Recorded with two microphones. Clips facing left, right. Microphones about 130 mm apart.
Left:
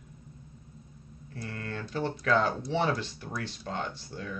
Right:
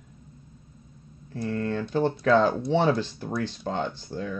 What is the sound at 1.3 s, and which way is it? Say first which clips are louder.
Speech: right 10 dB; 30° right (ahead or behind).